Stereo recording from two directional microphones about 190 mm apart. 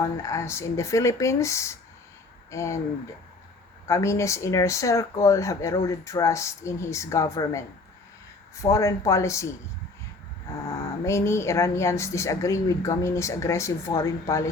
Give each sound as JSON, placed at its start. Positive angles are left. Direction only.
{"t": 0.2, "sound": "speech", "side_deg": 15}
{"t": 3.8, "sound": "speech", "side_deg": 15}
{"t": 8.7, "sound": "speech", "side_deg": 15}
{"t": 11.0, "sound": "speech", "side_deg": 15}